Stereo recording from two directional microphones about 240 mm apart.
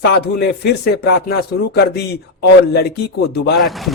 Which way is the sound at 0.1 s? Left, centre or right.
Left.